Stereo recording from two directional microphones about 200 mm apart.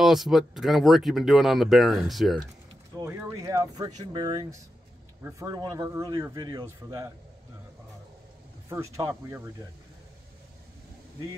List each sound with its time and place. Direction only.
0.0 s speech: centre (ahead or behind)
3.0 s speech: 15° right (ahead or behind)
8.9 s speech: 15° right (ahead or behind)